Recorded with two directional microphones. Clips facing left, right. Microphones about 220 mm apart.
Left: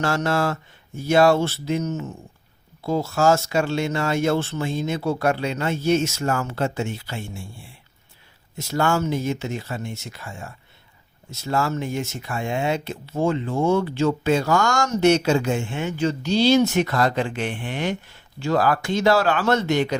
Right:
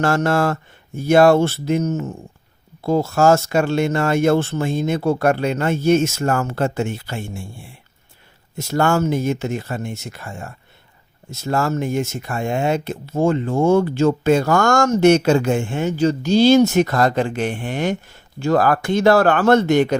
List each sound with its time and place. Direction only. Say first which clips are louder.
0.0 s speech: right 4 dB; 50° right (ahead or behind)
8.5 s speech: right 4 dB; 50° right (ahead or behind)